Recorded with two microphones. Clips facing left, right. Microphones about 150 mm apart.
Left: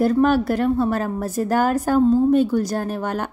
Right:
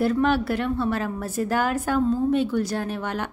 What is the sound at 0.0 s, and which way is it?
A woman's voice, 40° left (ahead or behind).